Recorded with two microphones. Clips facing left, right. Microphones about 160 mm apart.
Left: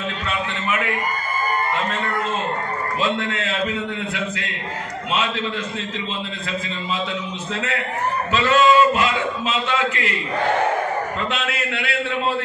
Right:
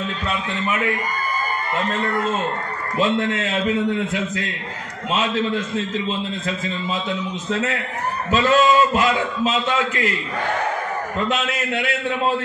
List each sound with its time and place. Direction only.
8.3 s a man's voice: 40° right (ahead or behind)
11.2 s a man's voice: 45° right (ahead or behind)